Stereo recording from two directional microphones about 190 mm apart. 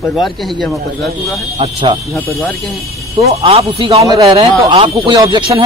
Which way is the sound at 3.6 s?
30° right (ahead or behind).